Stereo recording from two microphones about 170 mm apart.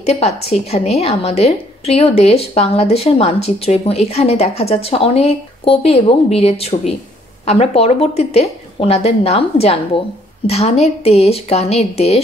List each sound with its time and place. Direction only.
0.0 s a woman's voice: 40° left (ahead or behind)